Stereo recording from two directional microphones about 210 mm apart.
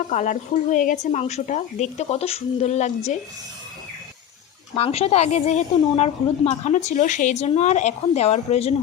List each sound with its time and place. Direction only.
0.1 s a woman's voice: 35° left (ahead or behind)
4.7 s a woman's voice: 30° left (ahead or behind)